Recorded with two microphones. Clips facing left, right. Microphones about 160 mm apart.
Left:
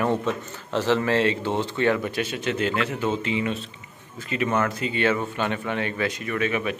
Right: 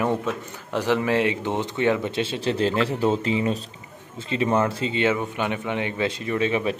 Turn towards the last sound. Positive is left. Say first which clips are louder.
# right 2 dB
turn(degrees=-25)  # may be behind; listen again after turning